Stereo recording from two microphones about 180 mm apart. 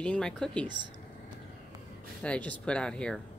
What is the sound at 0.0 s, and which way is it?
Speech, 5° left (ahead or behind).